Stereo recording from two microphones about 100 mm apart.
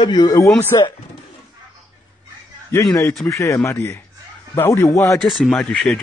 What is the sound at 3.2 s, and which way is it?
Speech, 30° left (ahead or behind).